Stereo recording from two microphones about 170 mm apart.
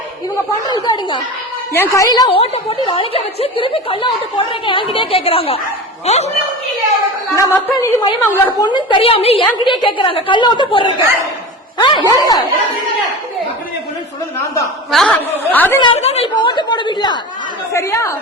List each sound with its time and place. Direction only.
0.7 s a woman's voice: 25° left (ahead or behind)
1.7 s a woman's voice: 15° left (ahead or behind); by 6.3 s 40° left (ahead or behind)
7.3 s a woman's voice: 20° left (ahead or behind)
8.4 s a woman's voice: 25° left (ahead or behind)
14.8 s a woman's voice: centre (ahead or behind)
16.0 s a woman's voice: 40° left (ahead or behind); by 18.1 s 15° left (ahead or behind)